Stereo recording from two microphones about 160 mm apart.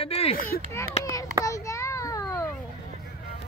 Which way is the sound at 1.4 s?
20° left (ahead or behind).